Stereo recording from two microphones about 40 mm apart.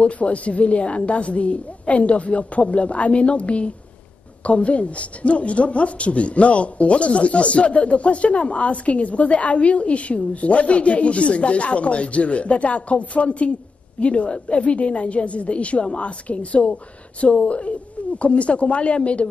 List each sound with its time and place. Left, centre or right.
0.0 s a woman's voice: left